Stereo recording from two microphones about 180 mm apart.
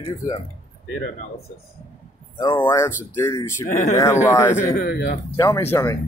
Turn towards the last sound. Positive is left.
turn(degrees=15)  # may be behind; listen again after turning